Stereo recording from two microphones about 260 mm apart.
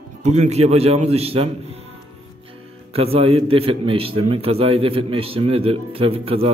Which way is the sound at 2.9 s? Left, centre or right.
Right.